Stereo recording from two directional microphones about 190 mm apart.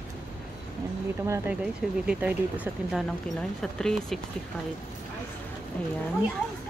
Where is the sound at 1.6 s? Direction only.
5° right (ahead or behind).